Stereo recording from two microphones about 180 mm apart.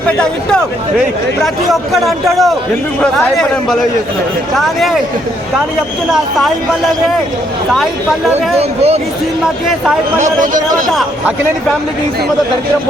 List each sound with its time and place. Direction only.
1.9 s speech: centre (ahead or behind)
8.5 s speech: 35° right (ahead or behind)
10.2 s speech: 45° right (ahead or behind)